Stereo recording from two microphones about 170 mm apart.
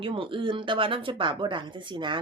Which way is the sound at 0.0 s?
30° right (ahead or behind).